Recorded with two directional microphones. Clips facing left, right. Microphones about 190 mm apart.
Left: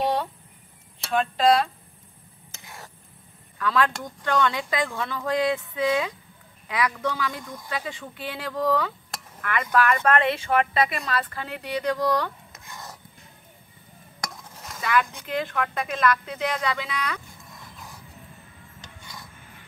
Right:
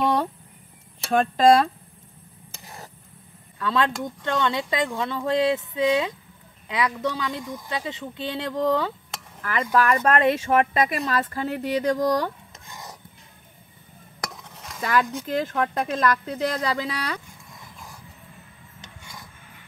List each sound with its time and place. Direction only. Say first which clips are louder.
0.0 s a sound: right 2 dB; 45° right (ahead or behind)
1.1 s speech: right 4 dB; 45° right (ahead or behind)
2.6 s stir: right 2 dB; 35° right (ahead or behind)
3.5 s speech: even; 25° right (ahead or behind); by 12.3 s 45° right (ahead or behind)
12.6 s a sound: even; 15° right (ahead or behind)
14.8 s speech: right 1 dB; 40° right (ahead or behind)